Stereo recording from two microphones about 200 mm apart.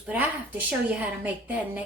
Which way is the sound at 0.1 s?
10° right (ahead or behind).